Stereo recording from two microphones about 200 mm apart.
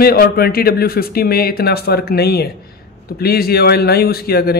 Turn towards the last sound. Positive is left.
turn(degrees=50)  # may be behind; listen again after turning